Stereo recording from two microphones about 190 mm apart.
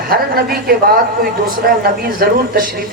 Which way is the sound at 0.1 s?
55° right (ahead or behind).